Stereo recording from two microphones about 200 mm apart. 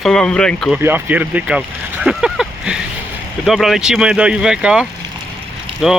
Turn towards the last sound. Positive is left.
turn(degrees=0)  # may be behind; listen again after turning